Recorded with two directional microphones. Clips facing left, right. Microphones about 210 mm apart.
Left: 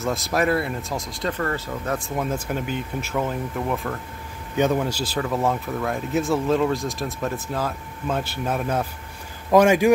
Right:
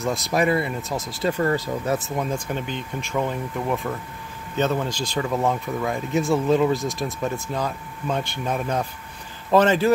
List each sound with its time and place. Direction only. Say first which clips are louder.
0.0 s speech: right 1 dB; centre (ahead or behind)
1.4 s speech: right 4 dB; 15° right (ahead or behind)
2.0 s speech: even; centre (ahead or behind)
4.6 s speech: left 2 dB; 10° left (ahead or behind)